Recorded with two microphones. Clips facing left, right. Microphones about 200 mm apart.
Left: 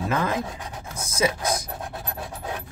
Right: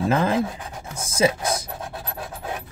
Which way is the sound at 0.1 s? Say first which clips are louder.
Right 4 dB; 30° right (ahead or behind).